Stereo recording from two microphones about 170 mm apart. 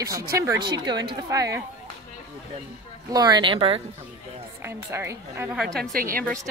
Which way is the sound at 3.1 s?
25° right (ahead or behind).